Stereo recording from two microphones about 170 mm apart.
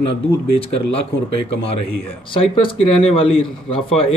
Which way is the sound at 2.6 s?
30° left (ahead or behind).